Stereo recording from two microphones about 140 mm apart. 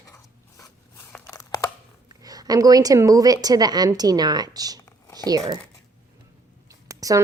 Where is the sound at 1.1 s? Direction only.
15° left (ahead or behind).